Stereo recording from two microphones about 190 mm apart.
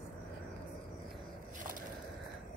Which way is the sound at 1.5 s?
45° right (ahead or behind).